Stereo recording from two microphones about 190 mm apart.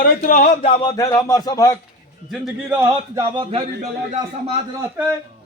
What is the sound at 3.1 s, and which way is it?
Speech, 25° right (ahead or behind).